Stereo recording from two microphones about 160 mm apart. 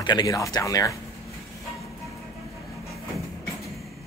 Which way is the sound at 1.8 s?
Centre (ahead or behind).